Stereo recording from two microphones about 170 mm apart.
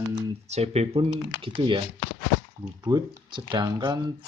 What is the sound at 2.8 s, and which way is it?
Speech, 20° right (ahead or behind).